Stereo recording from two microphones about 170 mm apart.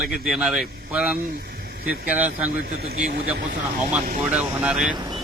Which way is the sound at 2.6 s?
65° right (ahead or behind).